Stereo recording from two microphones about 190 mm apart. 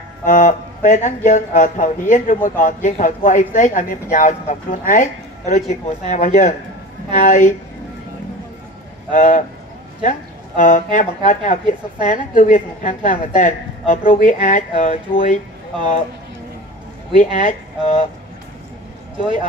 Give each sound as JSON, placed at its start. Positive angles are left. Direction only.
{"t": 0.2, "sound": "speech", "side_deg": 40}
{"t": 9.1, "sound": "speech", "side_deg": 45}
{"t": 17.2, "sound": "speech", "side_deg": 40}